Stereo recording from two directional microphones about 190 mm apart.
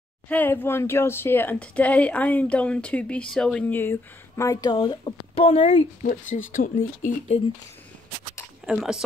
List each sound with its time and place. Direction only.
0.3 s speech: 10° left (ahead or behind); by 7.4 s 40° left (ahead or behind)
8.6 s speech: 5° right (ahead or behind)